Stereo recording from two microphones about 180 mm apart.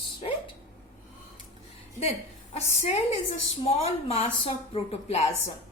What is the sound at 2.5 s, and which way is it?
A woman's voice, 35° left (ahead or behind).